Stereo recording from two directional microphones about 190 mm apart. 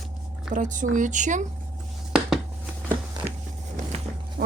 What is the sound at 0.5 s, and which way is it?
Speech, 40° right (ahead or behind).